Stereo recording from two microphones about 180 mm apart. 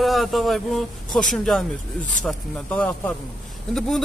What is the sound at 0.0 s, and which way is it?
Speech, centre (ahead or behind).